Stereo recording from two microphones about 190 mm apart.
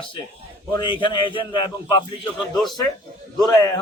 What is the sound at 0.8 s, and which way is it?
A man's voice, 25° left (ahead or behind).